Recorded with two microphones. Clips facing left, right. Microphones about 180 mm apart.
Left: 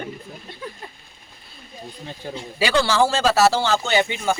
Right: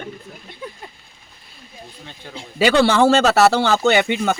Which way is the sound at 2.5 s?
60° right (ahead or behind).